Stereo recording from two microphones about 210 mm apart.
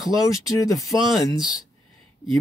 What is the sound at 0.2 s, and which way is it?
Speech, 15° left (ahead or behind).